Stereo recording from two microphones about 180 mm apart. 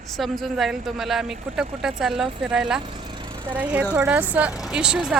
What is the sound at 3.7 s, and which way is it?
Speech, 10° right (ahead or behind).